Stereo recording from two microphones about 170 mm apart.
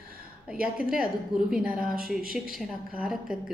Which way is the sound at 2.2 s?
60° right (ahead or behind).